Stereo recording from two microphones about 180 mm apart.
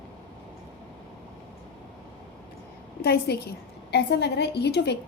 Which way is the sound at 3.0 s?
65° left (ahead or behind).